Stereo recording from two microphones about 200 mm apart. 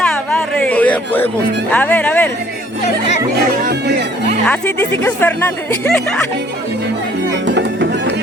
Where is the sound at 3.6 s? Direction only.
55° right (ahead or behind).